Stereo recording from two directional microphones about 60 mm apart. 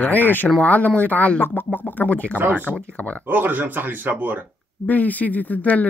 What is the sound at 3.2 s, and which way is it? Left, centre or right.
Speech, right.